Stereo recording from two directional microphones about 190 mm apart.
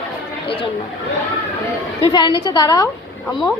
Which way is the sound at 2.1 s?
25° left (ahead or behind).